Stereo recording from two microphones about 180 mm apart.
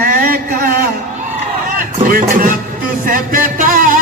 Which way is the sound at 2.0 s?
50° right (ahead or behind).